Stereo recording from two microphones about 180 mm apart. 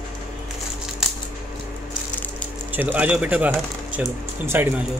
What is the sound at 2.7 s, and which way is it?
Speech, 10° right (ahead or behind).